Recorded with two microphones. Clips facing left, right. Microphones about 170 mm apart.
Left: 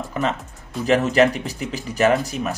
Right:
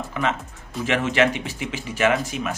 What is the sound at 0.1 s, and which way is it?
A man's voice, 40° left (ahead or behind).